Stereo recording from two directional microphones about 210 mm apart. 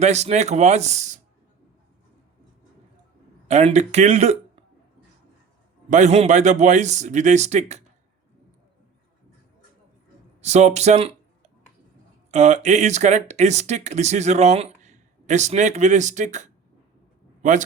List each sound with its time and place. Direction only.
0.0 s speech: 30° right (ahead or behind)
3.5 s speech: 30° right (ahead or behind)
5.9 s speech: 35° right (ahead or behind)
10.4 s speech: 30° right (ahead or behind)